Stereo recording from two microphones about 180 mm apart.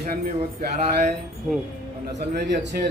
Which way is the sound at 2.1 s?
70° right (ahead or behind).